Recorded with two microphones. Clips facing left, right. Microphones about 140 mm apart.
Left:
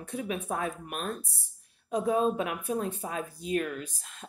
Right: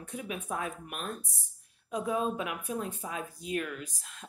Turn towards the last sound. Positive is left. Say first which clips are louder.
# left 4 dB
turn(degrees=30)  # may be behind; listen again after turning